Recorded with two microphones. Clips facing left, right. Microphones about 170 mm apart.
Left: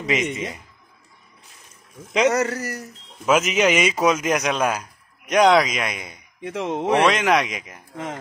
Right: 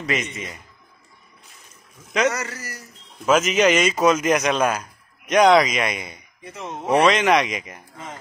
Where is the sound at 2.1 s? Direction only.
25° left (ahead or behind).